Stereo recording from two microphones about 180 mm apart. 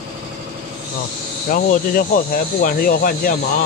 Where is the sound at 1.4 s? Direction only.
50° left (ahead or behind).